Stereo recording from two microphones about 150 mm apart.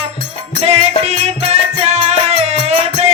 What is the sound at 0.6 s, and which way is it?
Music, 45° right (ahead or behind).